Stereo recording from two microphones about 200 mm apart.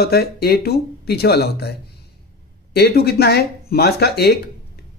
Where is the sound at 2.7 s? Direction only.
55° left (ahead or behind).